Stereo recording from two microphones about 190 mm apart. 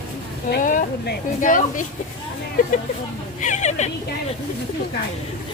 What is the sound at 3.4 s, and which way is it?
Speech, 40° left (ahead or behind).